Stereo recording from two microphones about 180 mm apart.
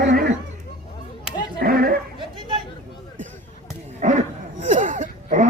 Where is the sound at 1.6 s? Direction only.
55° right (ahead or behind).